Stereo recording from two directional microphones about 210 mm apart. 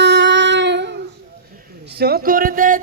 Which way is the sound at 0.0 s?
60° right (ahead or behind).